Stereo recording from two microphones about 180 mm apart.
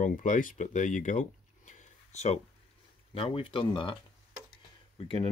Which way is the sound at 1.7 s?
40° left (ahead or behind).